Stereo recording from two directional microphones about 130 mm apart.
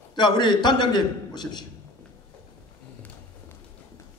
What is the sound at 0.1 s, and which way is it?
A man's voice, 35° left (ahead or behind).